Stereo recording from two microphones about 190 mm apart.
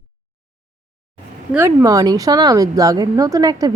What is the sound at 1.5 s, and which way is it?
A woman's voice, 15° right (ahead or behind).